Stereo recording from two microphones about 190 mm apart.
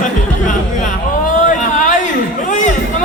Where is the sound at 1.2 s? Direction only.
40° left (ahead or behind).